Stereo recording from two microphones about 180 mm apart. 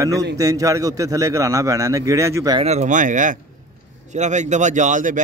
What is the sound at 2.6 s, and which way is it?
A man's voice, 40° right (ahead or behind).